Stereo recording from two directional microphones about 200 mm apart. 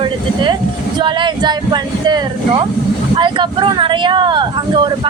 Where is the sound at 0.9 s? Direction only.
25° right (ahead or behind).